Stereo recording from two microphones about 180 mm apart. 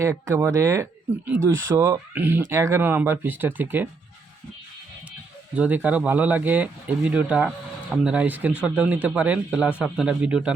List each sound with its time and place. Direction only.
0.0 s speech: 15° right (ahead or behind)
5.5 s a man's voice: 10° right (ahead or behind)